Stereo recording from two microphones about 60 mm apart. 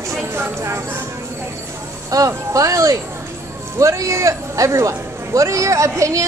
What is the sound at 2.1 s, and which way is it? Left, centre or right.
A man's voice, right.